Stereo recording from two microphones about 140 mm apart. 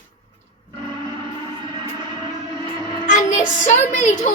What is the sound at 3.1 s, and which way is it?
A child's voice, 65° left (ahead or behind).